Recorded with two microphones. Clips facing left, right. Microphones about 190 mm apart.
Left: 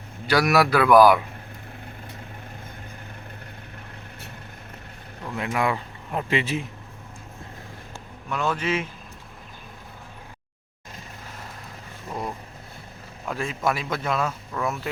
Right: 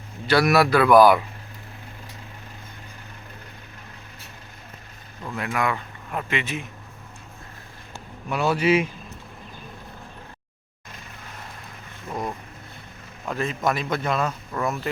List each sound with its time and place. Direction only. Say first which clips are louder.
0.3 s speech: right 1 dB; 10° left (ahead or behind)
5.4 s a man's voice: left 1 dB; 25° left (ahead or behind)
8.3 s a man's voice: right 5 dB; 10° right (ahead or behind)
13.2 s speech: right 1 dB; 5° left (ahead or behind)